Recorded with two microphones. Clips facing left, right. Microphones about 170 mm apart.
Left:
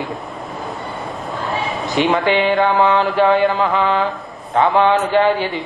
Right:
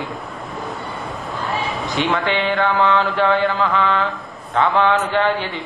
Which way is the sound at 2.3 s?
20° left (ahead or behind).